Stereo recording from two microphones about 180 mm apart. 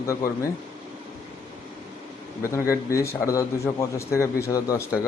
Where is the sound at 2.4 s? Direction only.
15° left (ahead or behind).